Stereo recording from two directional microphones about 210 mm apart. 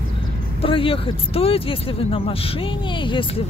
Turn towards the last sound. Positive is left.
turn(degrees=25)  # may be behind; listen again after turning